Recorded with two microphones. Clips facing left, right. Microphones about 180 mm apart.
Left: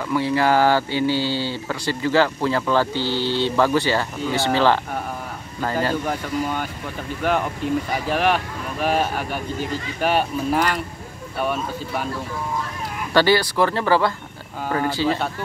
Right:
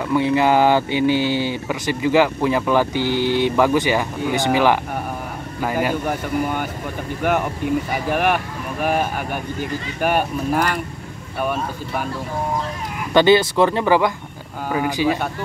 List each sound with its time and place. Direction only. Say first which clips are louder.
0.1 s speech: right 2 dB; 20° right (ahead or behind)
7.2 s speech: right 2 dB; 10° right (ahead or behind)
9.9 s speech: right 1 dB; 10° right (ahead or behind)
13.1 s speech: right 4 dB; 20° right (ahead or behind)